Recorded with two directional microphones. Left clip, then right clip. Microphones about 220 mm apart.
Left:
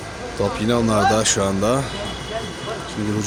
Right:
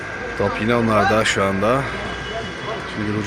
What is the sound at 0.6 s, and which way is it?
Speech, 20° left (ahead or behind).